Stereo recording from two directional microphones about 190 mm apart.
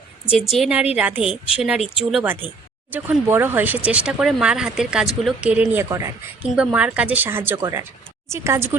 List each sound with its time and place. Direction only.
0.5 s a woman's voice: 5° right (ahead or behind)